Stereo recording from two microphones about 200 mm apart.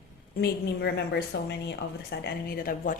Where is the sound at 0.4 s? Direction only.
55° left (ahead or behind).